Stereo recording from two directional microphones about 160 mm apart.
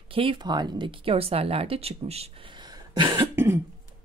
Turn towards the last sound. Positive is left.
turn(degrees=-15)  # may be behind; listen again after turning